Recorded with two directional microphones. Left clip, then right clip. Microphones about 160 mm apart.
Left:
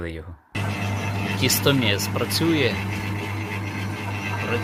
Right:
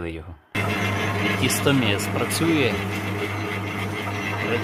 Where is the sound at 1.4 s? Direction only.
5° left (ahead or behind).